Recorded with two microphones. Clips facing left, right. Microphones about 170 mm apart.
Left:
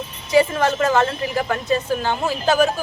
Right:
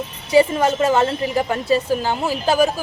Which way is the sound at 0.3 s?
25° right (ahead or behind).